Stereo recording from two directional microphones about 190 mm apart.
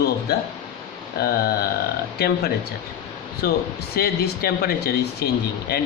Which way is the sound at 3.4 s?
55° left (ahead or behind).